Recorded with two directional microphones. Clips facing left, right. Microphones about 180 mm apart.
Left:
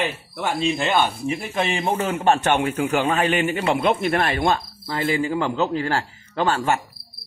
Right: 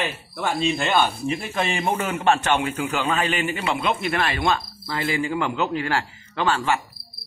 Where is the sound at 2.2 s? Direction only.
45° left (ahead or behind).